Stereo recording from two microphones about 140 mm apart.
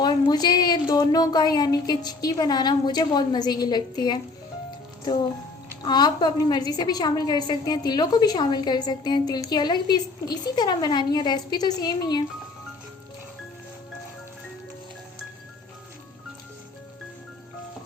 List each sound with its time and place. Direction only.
0.0 s a woman's voice: 30° left (ahead or behind)
5.8 s a woman's voice: 30° left (ahead or behind)